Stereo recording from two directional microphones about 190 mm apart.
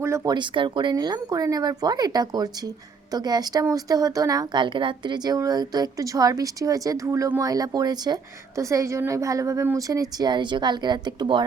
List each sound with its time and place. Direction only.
0.0 s speech: 15° right (ahead or behind)